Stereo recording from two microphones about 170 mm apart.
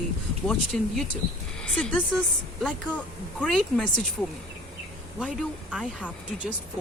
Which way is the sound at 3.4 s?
5° left (ahead or behind).